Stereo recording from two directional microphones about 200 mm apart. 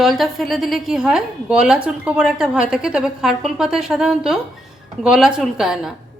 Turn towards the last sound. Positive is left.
turn(degrees=0)  # may be behind; listen again after turning